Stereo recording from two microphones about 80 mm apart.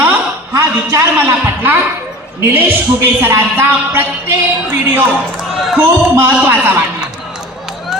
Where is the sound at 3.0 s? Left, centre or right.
Right.